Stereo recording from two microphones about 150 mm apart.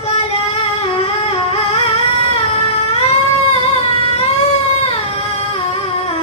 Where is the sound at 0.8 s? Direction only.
40° left (ahead or behind).